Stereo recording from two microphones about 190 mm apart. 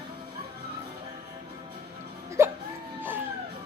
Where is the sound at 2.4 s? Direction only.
15° right (ahead or behind).